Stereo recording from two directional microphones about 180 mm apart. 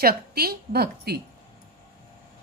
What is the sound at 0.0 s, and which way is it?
A woman's voice, 60° right (ahead or behind).